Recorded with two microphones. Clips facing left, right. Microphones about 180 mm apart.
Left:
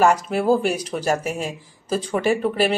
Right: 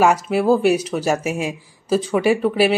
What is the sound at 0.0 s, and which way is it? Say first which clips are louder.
Speech: right 2 dB; 5° right (ahead or behind).